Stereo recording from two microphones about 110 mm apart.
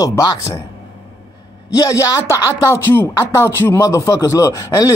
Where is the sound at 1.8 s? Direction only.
35° left (ahead or behind).